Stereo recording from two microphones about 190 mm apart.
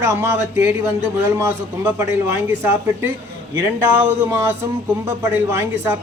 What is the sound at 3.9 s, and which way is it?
A man's voice, 15° right (ahead or behind).